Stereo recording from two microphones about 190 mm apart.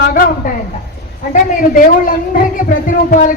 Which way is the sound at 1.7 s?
45° left (ahead or behind).